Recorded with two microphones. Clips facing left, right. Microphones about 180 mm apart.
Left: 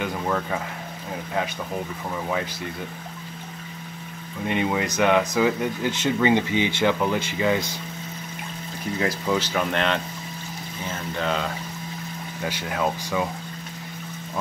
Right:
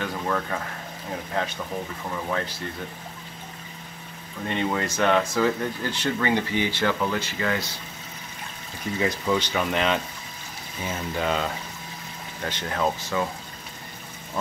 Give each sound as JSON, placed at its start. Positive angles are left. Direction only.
{"t": 0.0, "sound": "a sound", "side_deg": 10}
{"t": 2.0, "sound": "speech", "side_deg": 10}
{"t": 4.5, "sound": "speech", "side_deg": 10}
{"t": 8.9, "sound": "speech", "side_deg": 0}
{"t": 12.4, "sound": "speech", "side_deg": 10}